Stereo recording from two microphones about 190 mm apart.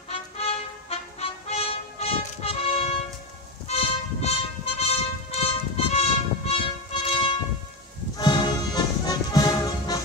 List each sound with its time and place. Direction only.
0.1 s music: 30° left (ahead or behind)